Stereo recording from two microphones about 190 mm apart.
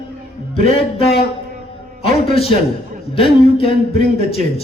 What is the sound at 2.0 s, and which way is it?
A man's voice, 30° left (ahead or behind).